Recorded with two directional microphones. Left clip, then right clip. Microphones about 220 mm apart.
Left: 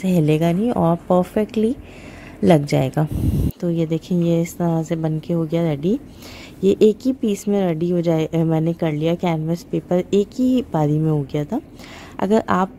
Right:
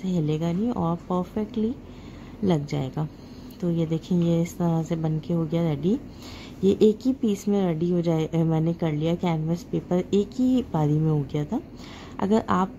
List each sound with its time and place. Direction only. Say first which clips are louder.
0.0 s a woman's voice: left 10 dB; 30° left (ahead or behind)